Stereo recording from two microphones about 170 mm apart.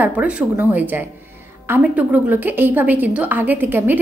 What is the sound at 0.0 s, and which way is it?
A woman's voice, 10° right (ahead or behind).